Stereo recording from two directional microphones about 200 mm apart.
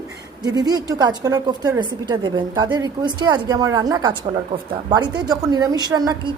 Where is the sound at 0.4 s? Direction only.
20° right (ahead or behind).